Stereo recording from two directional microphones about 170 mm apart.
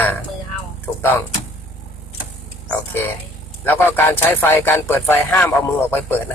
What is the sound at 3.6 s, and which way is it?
Speech, 10° left (ahead or behind).